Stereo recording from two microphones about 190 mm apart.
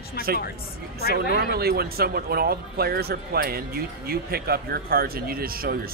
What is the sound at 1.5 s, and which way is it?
Speech, 55° right (ahead or behind).